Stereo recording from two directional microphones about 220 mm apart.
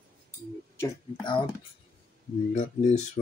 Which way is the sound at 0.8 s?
20° left (ahead or behind).